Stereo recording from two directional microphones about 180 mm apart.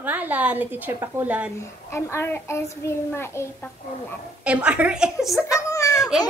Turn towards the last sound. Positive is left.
turn(degrees=15)  # may be behind; listen again after turning